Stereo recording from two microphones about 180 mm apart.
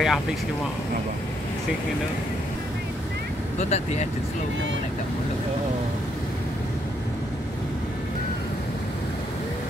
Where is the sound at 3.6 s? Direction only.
40° left (ahead or behind).